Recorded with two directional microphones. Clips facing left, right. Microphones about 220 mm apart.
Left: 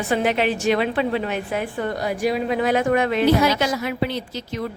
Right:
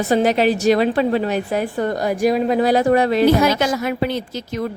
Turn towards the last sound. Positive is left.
turn(degrees=-45)  # may be behind; listen again after turning